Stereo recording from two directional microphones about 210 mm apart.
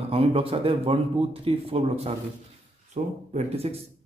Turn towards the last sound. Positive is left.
turn(degrees=-30)  # may be behind; listen again after turning